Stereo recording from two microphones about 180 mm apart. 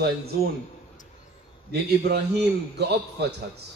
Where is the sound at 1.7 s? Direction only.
65° right (ahead or behind).